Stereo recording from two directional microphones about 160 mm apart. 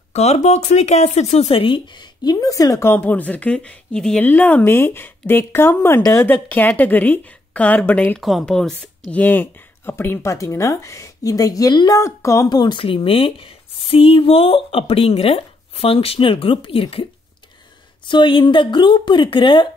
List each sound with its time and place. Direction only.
0.1 s speech: 40° left (ahead or behind); by 8.2 s 10° left (ahead or behind)
8.2 s speech: centre (ahead or behind); by 17.0 s 35° left (ahead or behind)
18.0 s speech: 30° left (ahead or behind)